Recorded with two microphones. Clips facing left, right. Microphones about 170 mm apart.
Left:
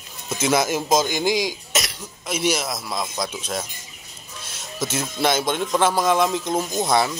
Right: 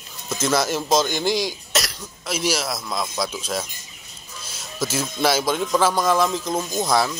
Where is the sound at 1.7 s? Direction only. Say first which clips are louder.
Right 1 dB; centre (ahead or behind).